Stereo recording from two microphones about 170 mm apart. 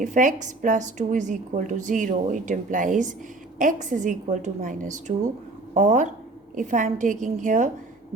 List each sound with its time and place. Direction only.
0.0 s a woman's voice: 45° right (ahead or behind)